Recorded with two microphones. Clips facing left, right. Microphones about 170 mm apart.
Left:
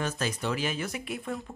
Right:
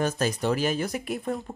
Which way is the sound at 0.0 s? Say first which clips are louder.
Right 5 dB; 40° right (ahead or behind).